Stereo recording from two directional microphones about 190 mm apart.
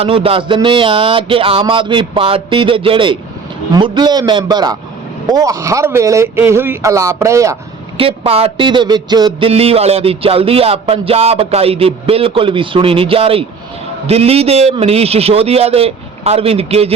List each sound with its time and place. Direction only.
0.0 s speech: 30° right (ahead or behind)
7.9 s a man's voice: 30° right (ahead or behind)